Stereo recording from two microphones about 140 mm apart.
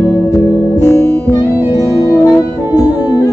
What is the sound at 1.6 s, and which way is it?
Music, 20° right (ahead or behind).